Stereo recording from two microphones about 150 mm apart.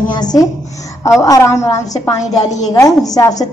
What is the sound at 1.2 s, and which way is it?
A woman's voice, 20° left (ahead or behind).